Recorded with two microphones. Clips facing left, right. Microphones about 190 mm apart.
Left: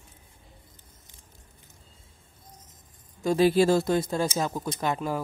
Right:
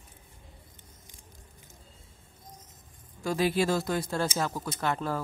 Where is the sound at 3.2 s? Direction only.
25° left (ahead or behind).